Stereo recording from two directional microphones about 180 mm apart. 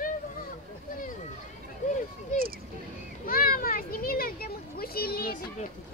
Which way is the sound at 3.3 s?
55° left (ahead or behind).